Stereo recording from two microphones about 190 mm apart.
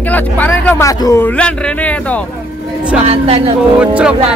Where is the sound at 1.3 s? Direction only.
5° left (ahead or behind).